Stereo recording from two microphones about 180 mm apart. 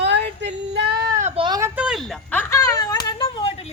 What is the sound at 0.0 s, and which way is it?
Female singing, 75° right (ahead or behind).